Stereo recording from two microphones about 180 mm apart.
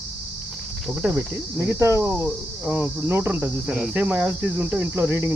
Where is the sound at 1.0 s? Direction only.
10° right (ahead or behind).